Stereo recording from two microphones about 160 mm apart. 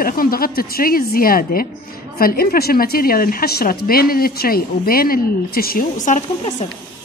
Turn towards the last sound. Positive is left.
turn(degrees=60)  # may be behind; listen again after turning